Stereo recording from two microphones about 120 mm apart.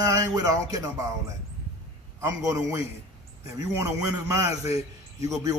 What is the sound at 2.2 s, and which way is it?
A man's voice, 25° right (ahead or behind).